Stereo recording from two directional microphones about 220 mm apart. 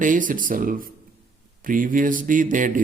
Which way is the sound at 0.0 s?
35° right (ahead or behind).